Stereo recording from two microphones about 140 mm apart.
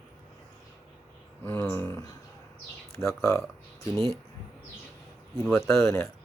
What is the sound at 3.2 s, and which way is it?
Speech, 20° left (ahead or behind).